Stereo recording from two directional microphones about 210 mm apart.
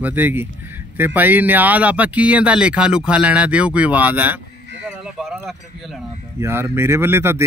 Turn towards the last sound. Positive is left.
turn(degrees=-10)  # may be behind; listen again after turning